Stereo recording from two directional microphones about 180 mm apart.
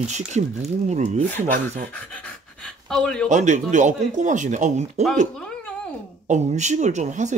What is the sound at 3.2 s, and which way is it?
Speech, 40° right (ahead or behind).